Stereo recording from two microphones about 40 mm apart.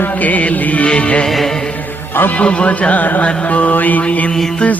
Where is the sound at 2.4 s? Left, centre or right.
Left.